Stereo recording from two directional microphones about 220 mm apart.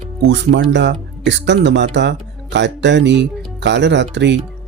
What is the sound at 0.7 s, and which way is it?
Speech, 55° right (ahead or behind).